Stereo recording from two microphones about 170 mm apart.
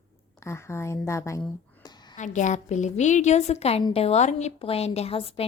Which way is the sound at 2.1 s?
45° left (ahead or behind).